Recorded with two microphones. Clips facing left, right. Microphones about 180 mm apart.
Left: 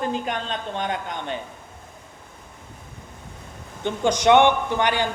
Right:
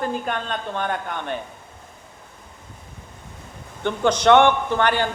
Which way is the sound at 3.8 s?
15° left (ahead or behind).